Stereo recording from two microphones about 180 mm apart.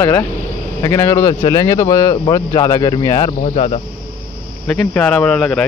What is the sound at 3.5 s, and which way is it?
Speech, 35° left (ahead or behind).